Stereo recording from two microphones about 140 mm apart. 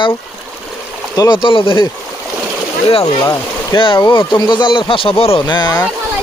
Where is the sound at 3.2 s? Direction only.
30° left (ahead or behind).